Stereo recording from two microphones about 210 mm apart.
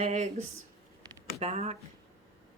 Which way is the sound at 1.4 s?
30° right (ahead or behind).